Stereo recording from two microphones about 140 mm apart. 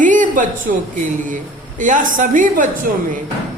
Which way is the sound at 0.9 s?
65° right (ahead or behind).